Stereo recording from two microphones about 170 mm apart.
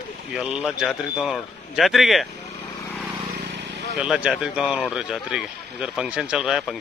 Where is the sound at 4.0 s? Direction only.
5° right (ahead or behind).